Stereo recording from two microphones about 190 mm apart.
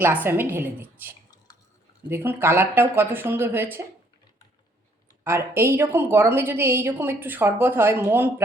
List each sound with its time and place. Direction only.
0.0 s a woman's voice: 10° right (ahead or behind)
5.2 s a woman's voice: 10° right (ahead or behind)